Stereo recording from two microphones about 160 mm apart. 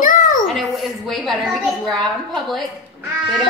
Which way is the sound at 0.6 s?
Centre (ahead or behind).